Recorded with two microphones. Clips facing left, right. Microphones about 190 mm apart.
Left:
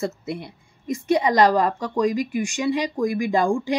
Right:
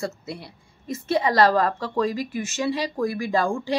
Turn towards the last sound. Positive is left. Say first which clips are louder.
# left 3 dB
turn(degrees=15)  # may be behind; listen again after turning